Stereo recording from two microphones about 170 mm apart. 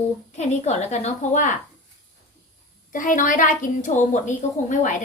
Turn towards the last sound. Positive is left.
turn(degrees=45)  # may be behind; listen again after turning